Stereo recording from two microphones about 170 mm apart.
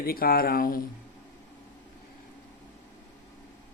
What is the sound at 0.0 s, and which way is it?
Speech, 60° left (ahead or behind).